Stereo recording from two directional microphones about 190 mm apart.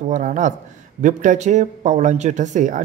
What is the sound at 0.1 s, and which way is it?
Speech, 40° right (ahead or behind).